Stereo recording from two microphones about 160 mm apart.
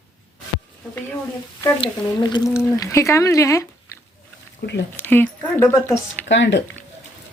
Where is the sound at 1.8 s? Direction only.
25° left (ahead or behind).